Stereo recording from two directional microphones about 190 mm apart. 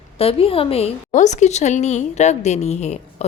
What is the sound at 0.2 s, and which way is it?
A woman's voice, 30° left (ahead or behind).